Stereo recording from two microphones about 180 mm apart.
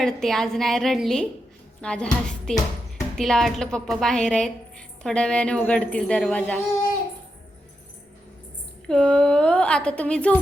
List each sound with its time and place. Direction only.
0.0 s a woman's voice: centre (ahead or behind)
8.9 s a woman's voice: 5° left (ahead or behind)